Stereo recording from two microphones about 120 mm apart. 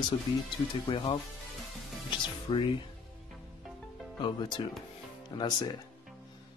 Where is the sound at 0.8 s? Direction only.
50° left (ahead or behind).